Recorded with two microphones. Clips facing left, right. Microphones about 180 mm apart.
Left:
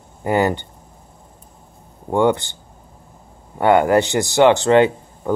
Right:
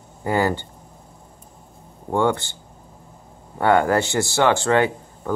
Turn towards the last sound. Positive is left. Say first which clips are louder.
# left 4 dB
turn(degrees=20)  # may be behind; listen again after turning